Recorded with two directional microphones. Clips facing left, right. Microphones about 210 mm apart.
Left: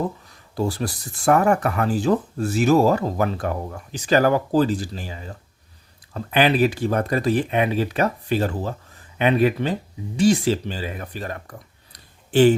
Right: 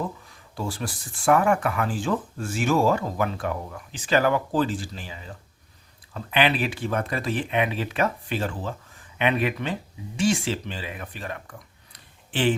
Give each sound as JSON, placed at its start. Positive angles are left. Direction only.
{"t": 0.0, "sound": "speech", "side_deg": 40}